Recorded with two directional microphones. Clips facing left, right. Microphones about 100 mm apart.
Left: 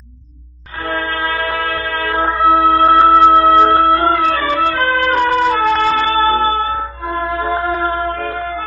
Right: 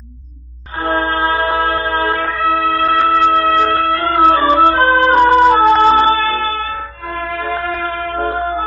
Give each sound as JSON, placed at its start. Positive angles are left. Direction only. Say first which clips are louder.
{"t": 0.8, "sound": "music", "louder": "right 4 dB", "side_deg": -30}
{"t": 2.1, "sound": "music", "louder": "left 4 dB", "side_deg": 25}
{"t": 4.2, "sound": "music", "louder": "right 5 dB", "side_deg": -30}
{"t": 6.1, "sound": "music", "louder": "left 4 dB", "side_deg": 30}
{"t": 7.2, "sound": "shofar", "louder": "left 2 dB", "side_deg": 25}
{"t": 8.2, "sound": "music", "louder": "right 4 dB", "side_deg": -30}